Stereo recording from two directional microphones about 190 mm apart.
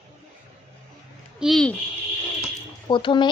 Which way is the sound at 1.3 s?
Centre (ahead or behind).